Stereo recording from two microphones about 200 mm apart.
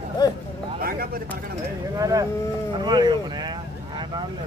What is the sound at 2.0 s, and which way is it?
Speech, 15° right (ahead or behind).